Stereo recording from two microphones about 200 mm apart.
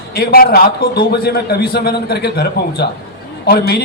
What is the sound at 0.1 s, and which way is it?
A man's voice, 50° left (ahead or behind).